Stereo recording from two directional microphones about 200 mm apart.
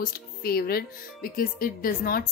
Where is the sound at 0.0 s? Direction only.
50° left (ahead or behind).